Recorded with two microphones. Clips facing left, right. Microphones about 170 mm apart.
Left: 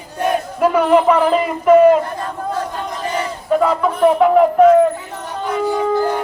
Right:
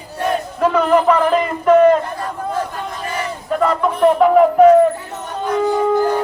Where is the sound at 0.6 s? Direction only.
10° left (ahead or behind).